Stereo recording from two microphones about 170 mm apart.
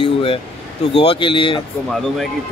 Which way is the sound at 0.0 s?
35° left (ahead or behind).